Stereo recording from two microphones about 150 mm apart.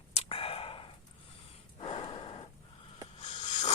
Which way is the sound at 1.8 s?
35° left (ahead or behind).